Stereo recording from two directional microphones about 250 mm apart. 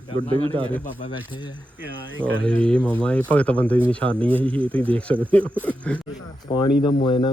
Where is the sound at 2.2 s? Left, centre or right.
Centre.